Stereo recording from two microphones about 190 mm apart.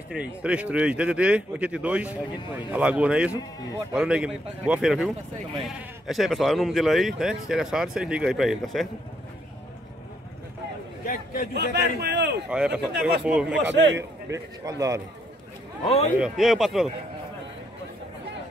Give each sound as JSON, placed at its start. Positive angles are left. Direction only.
{"t": 0.1, "sound": "speech", "side_deg": -5}
{"t": 11.5, "sound": "a man's voice", "side_deg": -60}
{"t": 12.4, "sound": "speech", "side_deg": -5}
{"t": 13.9, "sound": "speech", "side_deg": -15}
{"t": 15.8, "sound": "a man's voice", "side_deg": 30}
{"t": 16.2, "sound": "speech", "side_deg": 0}